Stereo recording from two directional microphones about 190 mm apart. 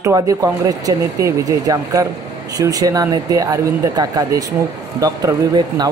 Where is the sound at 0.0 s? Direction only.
15° right (ahead or behind).